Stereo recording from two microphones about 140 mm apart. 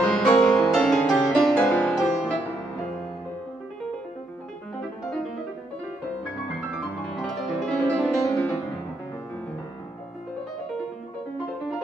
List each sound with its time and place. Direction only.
0.0 s music: 10° left (ahead or behind)
7.2 s music: 5° left (ahead or behind)